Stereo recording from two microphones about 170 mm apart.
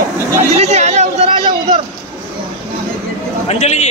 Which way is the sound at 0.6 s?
40° right (ahead or behind).